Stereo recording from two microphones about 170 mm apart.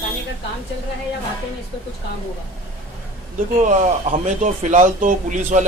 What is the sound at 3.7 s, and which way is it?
Speech, 45° right (ahead or behind).